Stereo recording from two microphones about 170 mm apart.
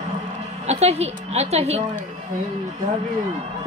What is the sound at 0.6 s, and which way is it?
A woman's voice, 40° right (ahead or behind).